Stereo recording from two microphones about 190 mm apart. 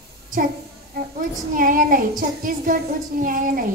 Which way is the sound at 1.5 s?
45° right (ahead or behind).